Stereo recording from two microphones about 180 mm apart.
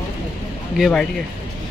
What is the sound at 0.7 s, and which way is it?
Speech, centre (ahead or behind).